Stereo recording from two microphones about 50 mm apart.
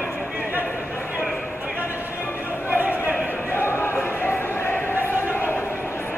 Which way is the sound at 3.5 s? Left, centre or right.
Left.